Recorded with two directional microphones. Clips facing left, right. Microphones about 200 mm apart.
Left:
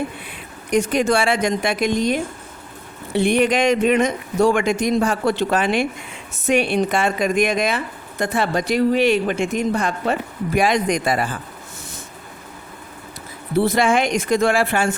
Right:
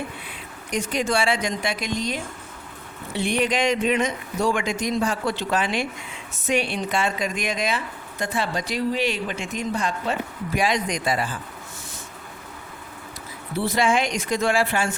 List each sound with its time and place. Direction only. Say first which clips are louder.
0.3 s a man's voice: left 8 dB; 55° left (ahead or behind)
13.6 s speech: left 5 dB; 55° left (ahead or behind)